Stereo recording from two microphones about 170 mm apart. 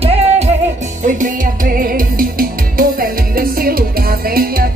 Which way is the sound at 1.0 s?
50° right (ahead or behind).